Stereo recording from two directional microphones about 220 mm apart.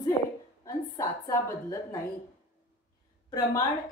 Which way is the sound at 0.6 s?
15° left (ahead or behind).